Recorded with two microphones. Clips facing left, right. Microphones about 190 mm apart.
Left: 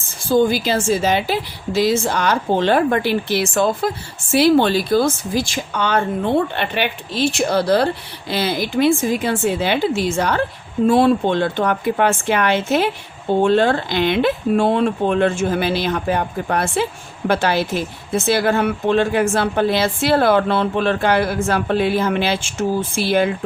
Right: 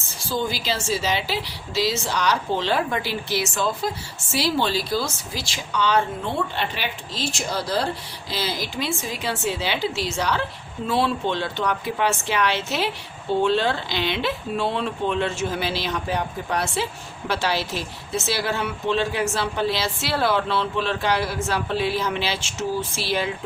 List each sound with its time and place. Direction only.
0.3 s a woman's voice: 50° left (ahead or behind)